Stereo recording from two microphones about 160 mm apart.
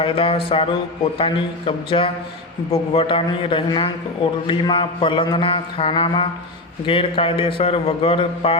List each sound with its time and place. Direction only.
0.0 s mantra: 35° left (ahead or behind)